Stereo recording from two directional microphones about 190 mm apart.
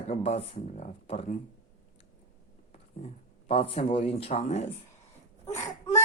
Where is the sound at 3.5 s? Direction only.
30° left (ahead or behind).